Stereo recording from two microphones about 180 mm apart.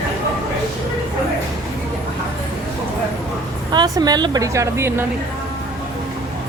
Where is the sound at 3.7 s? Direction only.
25° right (ahead or behind).